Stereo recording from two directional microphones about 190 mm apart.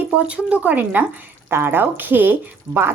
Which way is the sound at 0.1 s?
5° right (ahead or behind).